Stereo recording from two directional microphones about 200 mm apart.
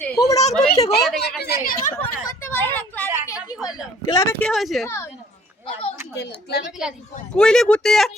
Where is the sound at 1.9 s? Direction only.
10° left (ahead or behind).